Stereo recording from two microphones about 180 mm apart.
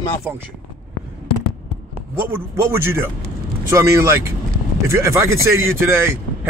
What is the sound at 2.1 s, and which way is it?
Speech, 15° right (ahead or behind).